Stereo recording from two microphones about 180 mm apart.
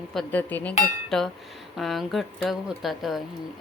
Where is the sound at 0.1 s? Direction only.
5° left (ahead or behind).